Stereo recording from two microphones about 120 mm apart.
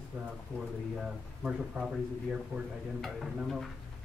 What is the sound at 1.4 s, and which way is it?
Speech, 5° right (ahead or behind).